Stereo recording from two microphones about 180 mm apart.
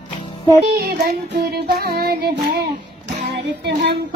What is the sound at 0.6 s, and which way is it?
Music, 60° right (ahead or behind).